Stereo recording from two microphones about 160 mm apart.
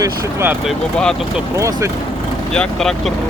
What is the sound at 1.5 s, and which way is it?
Speech, 20° right (ahead or behind).